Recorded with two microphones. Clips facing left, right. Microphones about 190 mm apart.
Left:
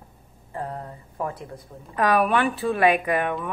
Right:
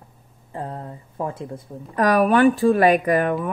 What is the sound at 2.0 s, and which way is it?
Speech, 40° right (ahead or behind).